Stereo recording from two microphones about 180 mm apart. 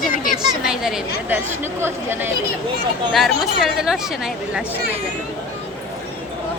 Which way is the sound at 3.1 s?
Centre (ahead or behind).